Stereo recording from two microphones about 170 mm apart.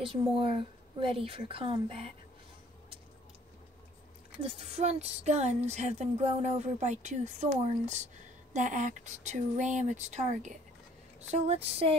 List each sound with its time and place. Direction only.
0.0 s speech: 30° right (ahead or behind)
4.4 s speech: 35° right (ahead or behind)